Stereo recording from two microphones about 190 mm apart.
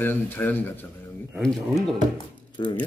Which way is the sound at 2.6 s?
25° left (ahead or behind).